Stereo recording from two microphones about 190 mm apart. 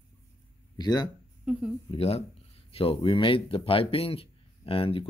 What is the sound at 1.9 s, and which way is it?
A man's voice, 30° left (ahead or behind).